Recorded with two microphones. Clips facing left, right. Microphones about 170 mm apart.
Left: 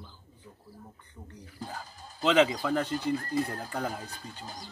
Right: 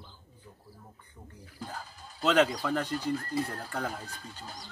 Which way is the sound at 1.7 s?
Centre (ahead or behind).